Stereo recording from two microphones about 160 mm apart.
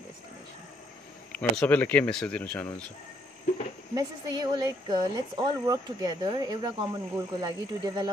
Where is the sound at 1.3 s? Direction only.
10° left (ahead or behind).